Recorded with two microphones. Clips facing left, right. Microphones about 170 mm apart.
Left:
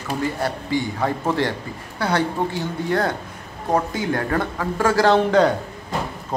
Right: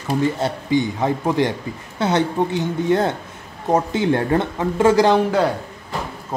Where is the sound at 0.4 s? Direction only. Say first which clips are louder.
Right 4 dB; 20° right (ahead or behind).